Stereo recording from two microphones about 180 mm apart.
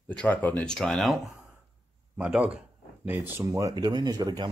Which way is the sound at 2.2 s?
5° right (ahead or behind).